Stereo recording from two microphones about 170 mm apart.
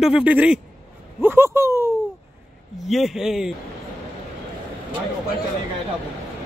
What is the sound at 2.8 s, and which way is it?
Speech, centre (ahead or behind).